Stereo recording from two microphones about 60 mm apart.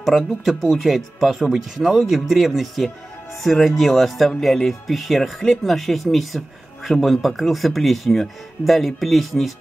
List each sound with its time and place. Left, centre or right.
0.0 s speech: centre